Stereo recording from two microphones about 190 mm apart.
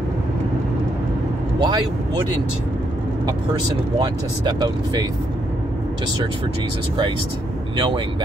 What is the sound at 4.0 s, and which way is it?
Speech, 20° right (ahead or behind).